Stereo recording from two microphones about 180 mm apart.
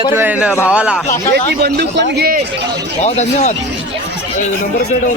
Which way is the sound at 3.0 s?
40° left (ahead or behind).